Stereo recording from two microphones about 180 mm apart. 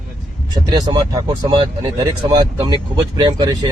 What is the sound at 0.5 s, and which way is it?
Speech, 25° right (ahead or behind).